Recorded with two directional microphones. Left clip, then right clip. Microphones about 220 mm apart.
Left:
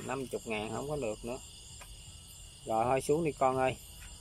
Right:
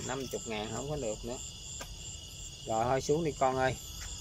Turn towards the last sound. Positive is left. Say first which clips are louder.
# even
turn(degrees=10)  # may be behind; listen again after turning